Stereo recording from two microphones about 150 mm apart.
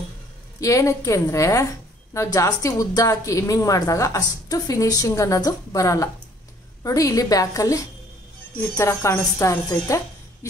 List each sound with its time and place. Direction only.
0.6 s a woman's voice: 20° left (ahead or behind)